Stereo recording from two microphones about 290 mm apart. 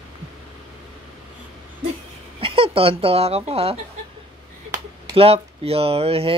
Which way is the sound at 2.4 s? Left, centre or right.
Centre.